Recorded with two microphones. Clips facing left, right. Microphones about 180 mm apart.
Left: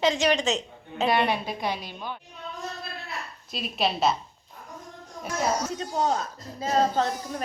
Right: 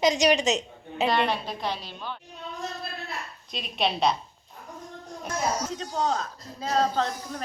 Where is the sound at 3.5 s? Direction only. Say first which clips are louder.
Left 1 dB; 5° left (ahead or behind).